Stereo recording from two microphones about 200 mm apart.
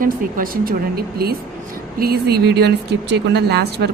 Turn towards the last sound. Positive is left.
turn(degrees=-55)  # may be behind; listen again after turning